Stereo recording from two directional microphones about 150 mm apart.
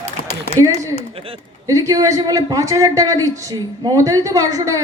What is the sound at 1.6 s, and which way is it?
A man's voice, 25° right (ahead or behind).